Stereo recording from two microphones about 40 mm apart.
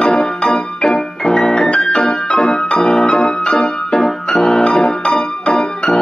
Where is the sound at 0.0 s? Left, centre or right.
Centre.